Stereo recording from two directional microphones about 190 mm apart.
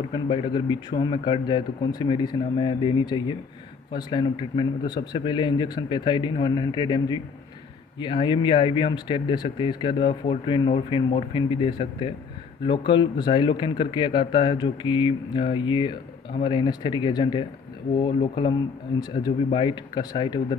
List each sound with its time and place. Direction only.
0.1 s speech: 25° left (ahead or behind)